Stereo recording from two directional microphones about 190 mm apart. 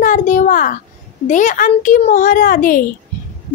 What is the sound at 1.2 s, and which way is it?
A child's voice, 40° left (ahead or behind).